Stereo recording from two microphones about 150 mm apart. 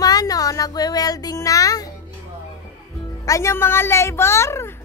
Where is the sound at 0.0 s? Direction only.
25° left (ahead or behind).